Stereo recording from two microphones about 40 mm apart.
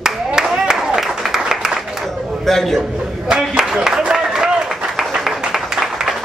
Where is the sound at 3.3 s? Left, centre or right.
Centre.